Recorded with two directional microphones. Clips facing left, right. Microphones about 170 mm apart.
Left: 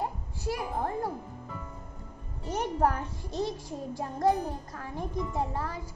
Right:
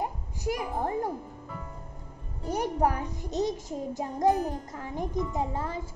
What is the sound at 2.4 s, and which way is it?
A child's voice, 10° right (ahead or behind).